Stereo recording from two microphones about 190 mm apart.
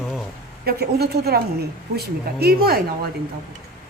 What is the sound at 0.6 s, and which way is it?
A woman's voice, 55° right (ahead or behind).